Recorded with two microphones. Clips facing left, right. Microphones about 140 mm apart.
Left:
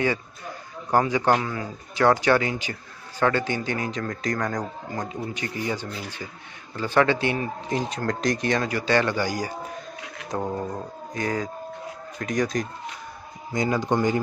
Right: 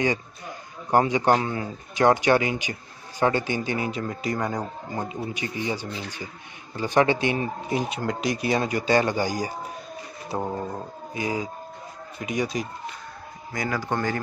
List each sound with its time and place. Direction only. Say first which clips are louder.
0.8 s a man's voice: right 1 dB; 20° right (ahead or behind); by 12.6 s 5° right (ahead or behind)
13.5 s speech: left 4 dB; 20° left (ahead or behind)